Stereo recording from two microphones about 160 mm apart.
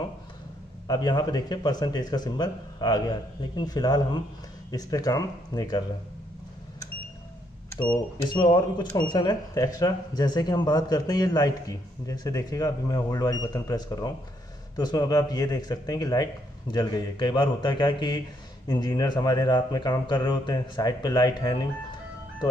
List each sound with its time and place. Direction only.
0.8 s speech: 25° left (ahead or behind)
8.2 s speech: 25° left (ahead or behind)